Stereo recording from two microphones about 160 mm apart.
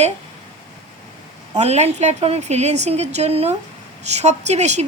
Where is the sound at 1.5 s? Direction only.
45° right (ahead or behind).